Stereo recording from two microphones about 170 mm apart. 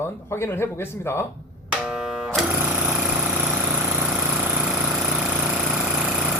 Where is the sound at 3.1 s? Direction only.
5° right (ahead or behind).